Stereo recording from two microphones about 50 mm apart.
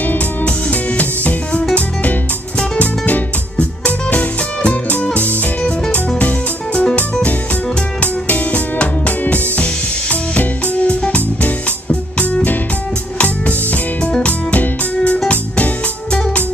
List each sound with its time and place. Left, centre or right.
0.5 s music: left
2.8 s music: left
8.0 s music: left